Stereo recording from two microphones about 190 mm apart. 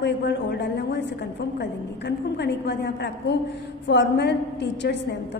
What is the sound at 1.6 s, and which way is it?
A woman's voice, 65° left (ahead or behind).